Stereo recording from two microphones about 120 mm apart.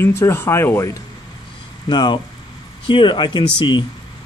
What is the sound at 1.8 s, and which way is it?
Speech, 40° left (ahead or behind).